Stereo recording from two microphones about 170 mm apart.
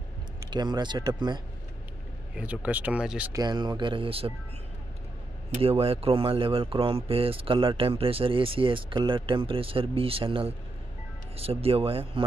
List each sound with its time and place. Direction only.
0.5 s speech: 25° right (ahead or behind)
2.3 s speech: 10° right (ahead or behind)
3.3 s speech: 25° right (ahead or behind)
5.5 s speech: 35° right (ahead or behind)